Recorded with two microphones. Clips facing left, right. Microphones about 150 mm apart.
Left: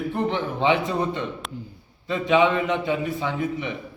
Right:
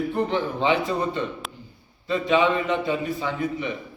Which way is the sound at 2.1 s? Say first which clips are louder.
Left 1 dB; 15° left (ahead or behind).